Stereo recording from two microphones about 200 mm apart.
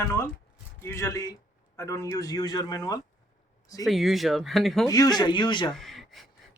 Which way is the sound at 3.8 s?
Centre (ahead or behind).